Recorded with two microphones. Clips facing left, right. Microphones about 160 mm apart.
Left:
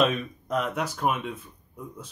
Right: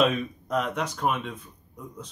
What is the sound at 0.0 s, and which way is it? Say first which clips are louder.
Speech: right 1 dB; centre (ahead or behind).